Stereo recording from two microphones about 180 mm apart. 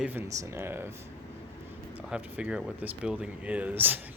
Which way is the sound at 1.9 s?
5° right (ahead or behind).